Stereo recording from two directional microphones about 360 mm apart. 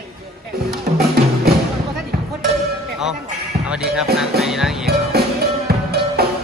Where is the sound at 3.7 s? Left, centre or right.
Centre.